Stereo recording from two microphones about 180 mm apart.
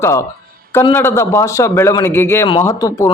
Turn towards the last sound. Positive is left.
turn(degrees=20)  # may be behind; listen again after turning